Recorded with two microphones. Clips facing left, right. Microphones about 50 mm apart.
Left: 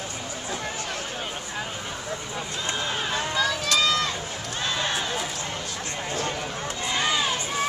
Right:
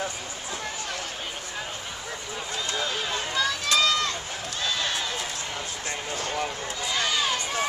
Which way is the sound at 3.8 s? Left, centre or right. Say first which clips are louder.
Left 1 dB; centre.